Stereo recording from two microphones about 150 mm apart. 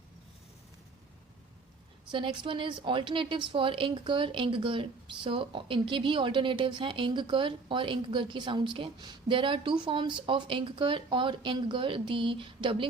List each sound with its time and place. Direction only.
2.0 s a woman's voice: 35° right (ahead or behind)